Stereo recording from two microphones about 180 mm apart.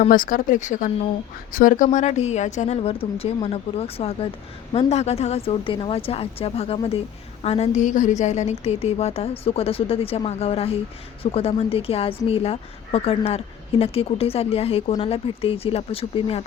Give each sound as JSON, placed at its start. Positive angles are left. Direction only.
{"t": 0.0, "sound": "speech", "side_deg": 50}